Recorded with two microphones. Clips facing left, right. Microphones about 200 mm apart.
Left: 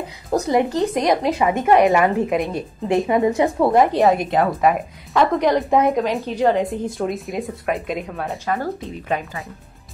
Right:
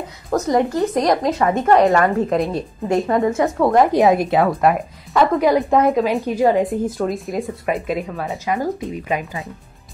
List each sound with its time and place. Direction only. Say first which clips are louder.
0.3 s a woman's voice: right 1 dB; 15° left (ahead or behind)
3.6 s a woman's voice: right 2 dB; 5° left (ahead or behind); by 9.4 s 10° right (ahead or behind)